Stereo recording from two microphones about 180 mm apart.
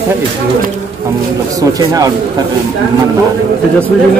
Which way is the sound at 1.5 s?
20° right (ahead or behind).